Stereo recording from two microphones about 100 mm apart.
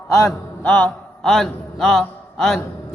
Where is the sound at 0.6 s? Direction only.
20° left (ahead or behind).